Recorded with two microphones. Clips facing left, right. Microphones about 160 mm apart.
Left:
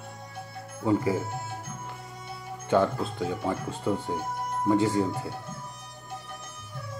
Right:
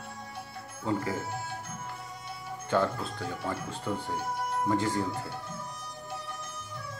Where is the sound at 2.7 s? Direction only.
20° left (ahead or behind).